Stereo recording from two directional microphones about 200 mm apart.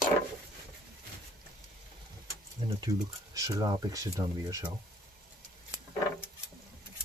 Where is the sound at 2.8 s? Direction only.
15° right (ahead or behind).